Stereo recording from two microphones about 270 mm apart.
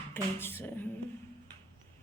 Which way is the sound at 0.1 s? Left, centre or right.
Centre.